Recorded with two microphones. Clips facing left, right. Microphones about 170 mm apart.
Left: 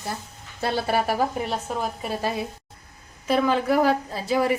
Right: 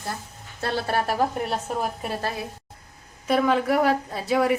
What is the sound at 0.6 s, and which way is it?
A woman's voice, 10° left (ahead or behind).